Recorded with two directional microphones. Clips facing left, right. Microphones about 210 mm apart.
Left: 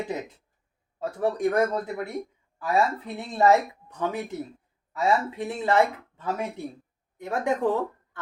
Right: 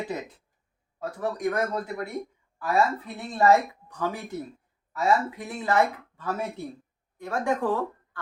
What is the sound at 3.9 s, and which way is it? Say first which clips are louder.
Speech: left 2 dB; 20° left (ahead or behind).